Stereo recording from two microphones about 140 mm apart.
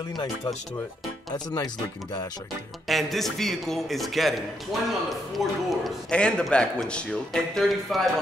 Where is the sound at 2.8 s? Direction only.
Centre (ahead or behind).